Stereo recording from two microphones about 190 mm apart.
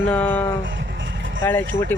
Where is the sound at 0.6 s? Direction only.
70° right (ahead or behind).